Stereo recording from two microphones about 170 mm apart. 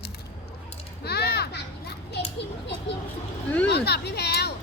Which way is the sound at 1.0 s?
70° left (ahead or behind).